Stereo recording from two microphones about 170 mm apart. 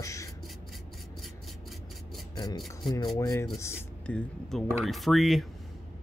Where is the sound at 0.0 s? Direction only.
20° left (ahead or behind).